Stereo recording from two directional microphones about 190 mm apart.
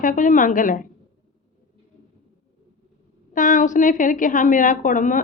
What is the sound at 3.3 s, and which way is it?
A woman's voice, 45° left (ahead or behind).